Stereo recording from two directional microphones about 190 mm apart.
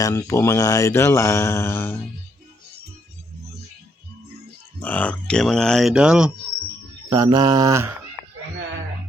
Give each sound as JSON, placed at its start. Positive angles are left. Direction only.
{"t": 0.0, "sound": "speech", "side_deg": 15}
{"t": 4.8, "sound": "speech", "side_deg": 10}
{"t": 7.1, "sound": "mantra", "side_deg": -20}